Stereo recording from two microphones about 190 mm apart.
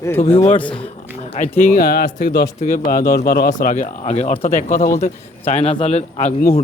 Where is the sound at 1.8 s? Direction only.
55° left (ahead or behind); by 4.6 s 35° left (ahead or behind).